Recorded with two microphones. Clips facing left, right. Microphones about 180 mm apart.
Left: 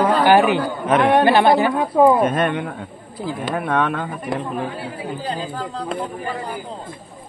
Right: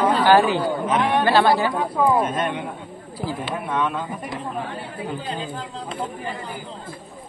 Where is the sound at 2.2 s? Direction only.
60° left (ahead or behind).